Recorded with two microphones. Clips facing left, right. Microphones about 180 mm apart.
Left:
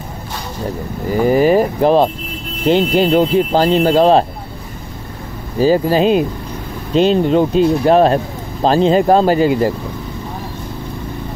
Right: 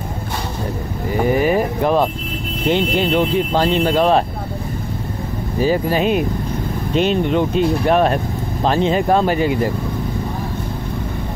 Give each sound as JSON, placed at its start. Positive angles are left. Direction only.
{"t": 1.2, "sound": "vehicle", "side_deg": 35}
{"t": 2.6, "sound": "speech", "side_deg": 35}
{"t": 5.6, "sound": "speech", "side_deg": 35}